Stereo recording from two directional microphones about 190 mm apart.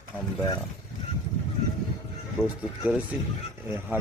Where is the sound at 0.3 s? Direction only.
15° left (ahead or behind).